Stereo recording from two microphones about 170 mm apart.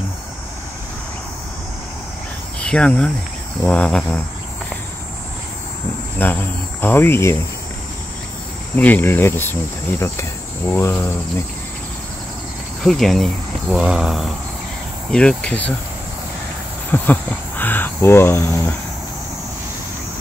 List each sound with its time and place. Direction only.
2.6 s speech: 5° left (ahead or behind)
6.2 s speech: 10° left (ahead or behind)
8.7 s speech: 10° left (ahead or behind)
12.8 s speech: centre (ahead or behind)
16.9 s speech: 10° left (ahead or behind)